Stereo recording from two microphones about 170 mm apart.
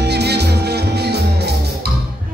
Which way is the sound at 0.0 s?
75° right (ahead or behind).